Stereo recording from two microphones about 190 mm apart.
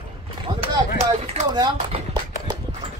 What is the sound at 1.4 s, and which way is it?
Horse, 20° right (ahead or behind).